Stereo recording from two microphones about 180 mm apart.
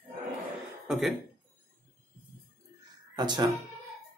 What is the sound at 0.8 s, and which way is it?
Speech, centre (ahead or behind).